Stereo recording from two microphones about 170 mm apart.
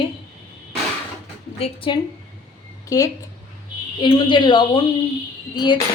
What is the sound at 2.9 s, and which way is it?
A woman's voice, 20° left (ahead or behind).